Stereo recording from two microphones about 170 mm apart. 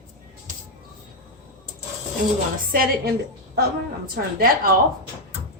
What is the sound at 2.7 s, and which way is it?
A woman's voice, 65° right (ahead or behind).